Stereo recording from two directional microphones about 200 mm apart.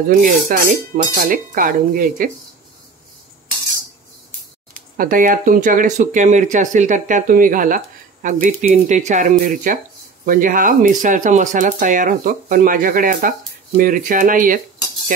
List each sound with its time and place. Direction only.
0.1 s speech: 45° right (ahead or behind)
4.9 s speech: 45° right (ahead or behind)